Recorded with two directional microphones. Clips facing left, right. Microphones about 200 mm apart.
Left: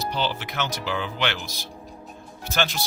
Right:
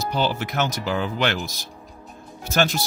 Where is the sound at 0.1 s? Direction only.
45° right (ahead or behind).